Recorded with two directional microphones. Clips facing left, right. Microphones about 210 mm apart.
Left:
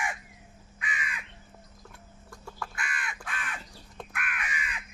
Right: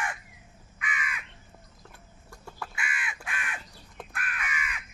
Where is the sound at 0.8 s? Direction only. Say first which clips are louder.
Right 1 dB; 30° left (ahead or behind).